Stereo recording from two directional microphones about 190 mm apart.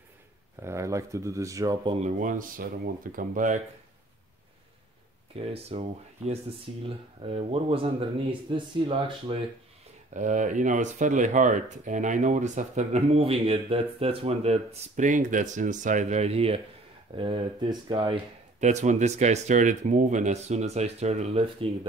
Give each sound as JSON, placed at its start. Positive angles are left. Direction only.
{"t": 0.6, "sound": "speech", "side_deg": -15}
{"t": 2.0, "sound": "speech", "side_deg": -40}
{"t": 5.3, "sound": "speech", "side_deg": -30}
{"t": 10.1, "sound": "speech", "side_deg": -40}